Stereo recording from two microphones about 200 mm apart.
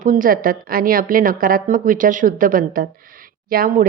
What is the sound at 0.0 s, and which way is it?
A woman's voice, 40° right (ahead or behind).